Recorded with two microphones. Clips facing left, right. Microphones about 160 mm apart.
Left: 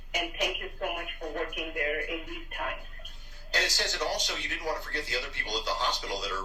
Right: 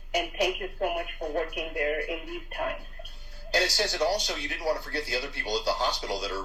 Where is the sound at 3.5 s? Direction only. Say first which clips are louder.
Right 5 dB; 35° right (ahead or behind).